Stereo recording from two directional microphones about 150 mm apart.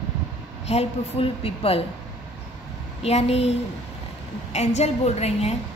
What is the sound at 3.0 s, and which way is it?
A woman's voice, 45° left (ahead or behind).